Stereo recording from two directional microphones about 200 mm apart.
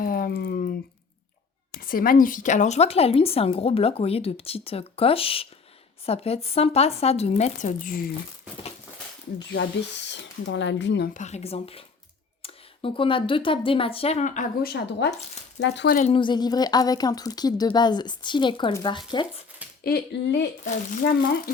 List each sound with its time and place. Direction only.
0.0 s a sound: 45° left (ahead or behind)
1.7 s a woman's voice: 45° left (ahead or behind)
9.5 s speech: 60° left (ahead or behind)
11.1 s a woman's voice: 35° left (ahead or behind); by 16.0 s 60° left (ahead or behind)
16.0 s a woman's voice: 30° left (ahead or behind)
19.8 s speech: 55° left (ahead or behind)